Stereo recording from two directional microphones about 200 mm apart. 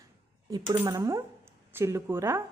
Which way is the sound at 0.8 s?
15° right (ahead or behind).